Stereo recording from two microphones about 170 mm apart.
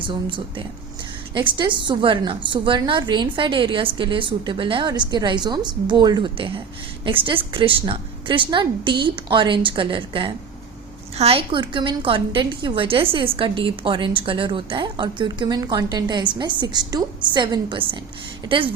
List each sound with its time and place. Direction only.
0.0 s a woman's voice: 30° right (ahead or behind)